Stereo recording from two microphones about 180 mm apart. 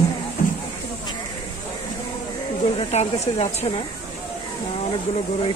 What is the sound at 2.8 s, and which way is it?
Speech, 35° left (ahead or behind).